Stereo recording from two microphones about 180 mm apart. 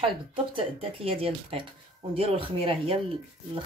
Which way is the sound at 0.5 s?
30° right (ahead or behind).